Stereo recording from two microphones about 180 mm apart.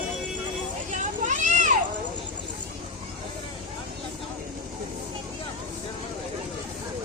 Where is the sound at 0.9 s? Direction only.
45° right (ahead or behind).